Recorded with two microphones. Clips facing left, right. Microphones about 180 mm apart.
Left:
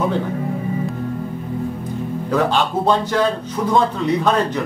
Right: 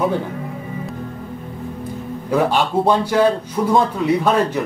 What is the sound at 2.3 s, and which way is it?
A man's voice, 10° right (ahead or behind).